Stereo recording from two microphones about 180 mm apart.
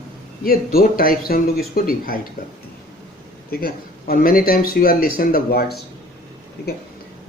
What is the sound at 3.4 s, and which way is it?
A man's voice, 55° left (ahead or behind).